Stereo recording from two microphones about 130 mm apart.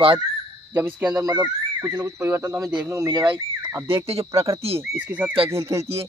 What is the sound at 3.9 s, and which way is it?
Speech, 50° right (ahead or behind).